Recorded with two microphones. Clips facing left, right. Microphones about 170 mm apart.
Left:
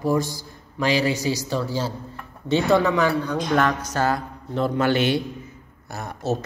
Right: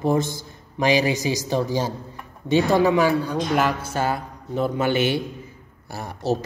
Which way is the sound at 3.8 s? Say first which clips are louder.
Left 1 dB; 25° right (ahead or behind).